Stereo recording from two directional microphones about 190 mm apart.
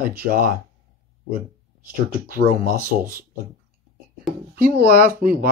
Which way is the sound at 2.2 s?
50° right (ahead or behind).